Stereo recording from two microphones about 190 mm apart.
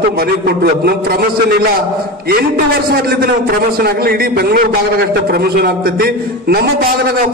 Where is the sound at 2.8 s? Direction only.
55° right (ahead or behind).